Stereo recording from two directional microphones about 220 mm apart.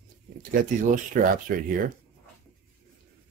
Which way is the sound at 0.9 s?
40° right (ahead or behind).